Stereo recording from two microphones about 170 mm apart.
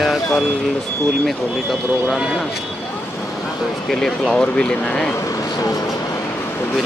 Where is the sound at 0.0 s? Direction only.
Centre (ahead or behind).